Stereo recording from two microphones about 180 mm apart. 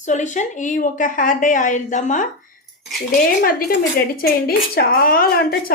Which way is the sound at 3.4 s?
55° left (ahead or behind).